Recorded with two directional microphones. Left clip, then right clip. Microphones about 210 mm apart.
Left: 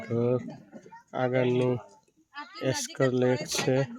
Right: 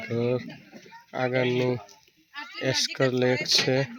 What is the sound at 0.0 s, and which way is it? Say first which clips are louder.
A child's voice: right 1 dB; centre (ahead or behind).